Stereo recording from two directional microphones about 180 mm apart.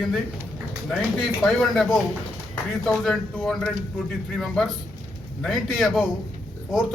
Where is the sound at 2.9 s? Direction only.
Centre (ahead or behind).